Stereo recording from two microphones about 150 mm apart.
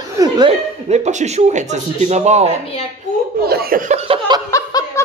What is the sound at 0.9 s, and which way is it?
A man's voice, 50° right (ahead or behind).